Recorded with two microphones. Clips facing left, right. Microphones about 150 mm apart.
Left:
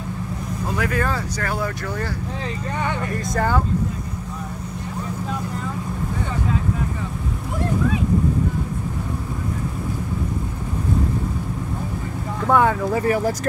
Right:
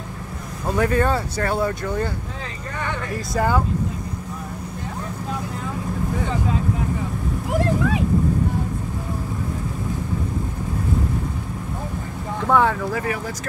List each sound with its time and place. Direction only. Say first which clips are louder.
0.7 s speech: right 5 dB; 30° right (ahead or behind)
3.3 s speech: right 1 dB; 15° right (ahead or behind)
12.4 s speech: left 1 dB; centre (ahead or behind)
12.9 s speech: left 5 dB; 35° left (ahead or behind)